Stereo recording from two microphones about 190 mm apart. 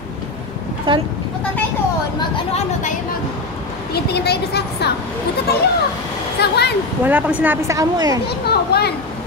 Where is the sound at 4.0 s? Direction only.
60° left (ahead or behind).